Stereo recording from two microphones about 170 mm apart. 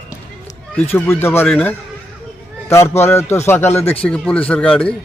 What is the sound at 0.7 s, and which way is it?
Speech, 15° left (ahead or behind).